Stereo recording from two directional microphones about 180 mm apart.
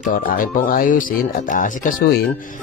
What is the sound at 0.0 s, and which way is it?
Speech, 50° left (ahead or behind).